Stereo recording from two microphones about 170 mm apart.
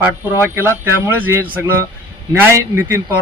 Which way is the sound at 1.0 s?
15° right (ahead or behind).